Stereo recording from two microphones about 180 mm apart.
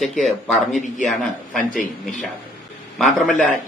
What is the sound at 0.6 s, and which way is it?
Speech, 45° left (ahead or behind).